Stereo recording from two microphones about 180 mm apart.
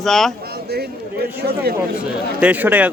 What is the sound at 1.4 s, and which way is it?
Speech, 60° right (ahead or behind).